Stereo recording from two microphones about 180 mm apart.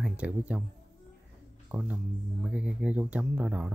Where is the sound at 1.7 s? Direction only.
5° right (ahead or behind).